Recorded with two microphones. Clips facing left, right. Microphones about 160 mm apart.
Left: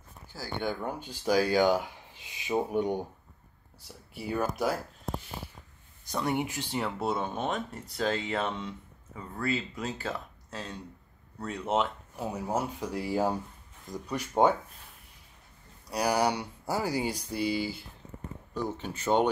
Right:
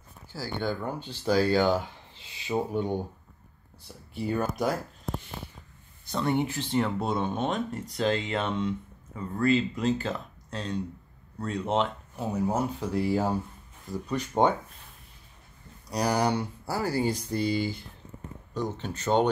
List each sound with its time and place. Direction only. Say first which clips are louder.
0.3 s speech: right 2 dB; 20° left (ahead or behind); by 4.7 s 5° left (ahead or behind)
6.0 s speech: right 3 dB; 10° left (ahead or behind)
15.9 s speech: right 1 dB; 10° left (ahead or behind)